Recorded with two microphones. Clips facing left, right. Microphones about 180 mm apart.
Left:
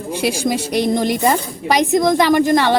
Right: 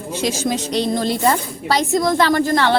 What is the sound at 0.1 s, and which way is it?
Speech, 10° left (ahead or behind).